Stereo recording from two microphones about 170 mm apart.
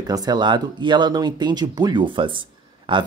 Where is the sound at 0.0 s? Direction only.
20° right (ahead or behind).